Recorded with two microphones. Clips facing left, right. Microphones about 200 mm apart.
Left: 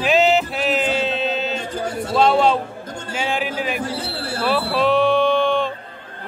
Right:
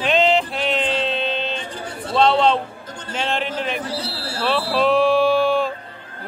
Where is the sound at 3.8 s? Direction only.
50° left (ahead or behind).